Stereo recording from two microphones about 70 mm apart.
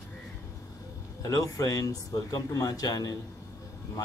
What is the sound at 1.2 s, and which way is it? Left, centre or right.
Speech, left.